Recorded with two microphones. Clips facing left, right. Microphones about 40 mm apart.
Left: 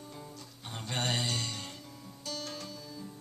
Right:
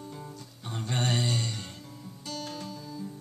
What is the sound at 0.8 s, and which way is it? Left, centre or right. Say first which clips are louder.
Music: right 3 dB; centre.